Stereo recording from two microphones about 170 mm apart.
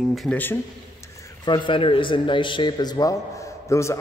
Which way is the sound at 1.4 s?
30° left (ahead or behind).